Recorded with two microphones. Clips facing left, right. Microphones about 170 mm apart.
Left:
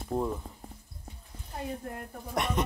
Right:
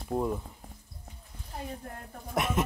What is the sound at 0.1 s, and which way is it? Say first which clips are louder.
Speech: right 1 dB; 5° right (ahead or behind).